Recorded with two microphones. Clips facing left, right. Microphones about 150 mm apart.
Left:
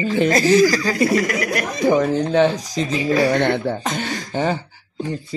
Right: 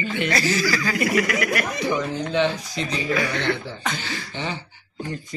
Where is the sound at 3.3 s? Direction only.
55° left (ahead or behind).